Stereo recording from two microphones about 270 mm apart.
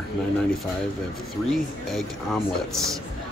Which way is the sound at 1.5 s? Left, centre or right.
Centre.